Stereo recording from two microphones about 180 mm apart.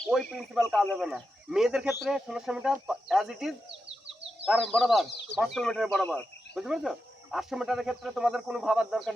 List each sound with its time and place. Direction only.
0.0 s speech: 5° left (ahead or behind)
3.7 s bird: 30° right (ahead or behind)
4.4 s speech: centre (ahead or behind)